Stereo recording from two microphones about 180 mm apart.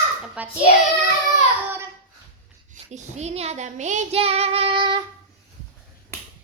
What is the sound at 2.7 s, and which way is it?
Child singing, 40° right (ahead or behind).